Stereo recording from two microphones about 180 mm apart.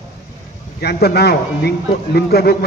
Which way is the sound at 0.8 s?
60° left (ahead or behind).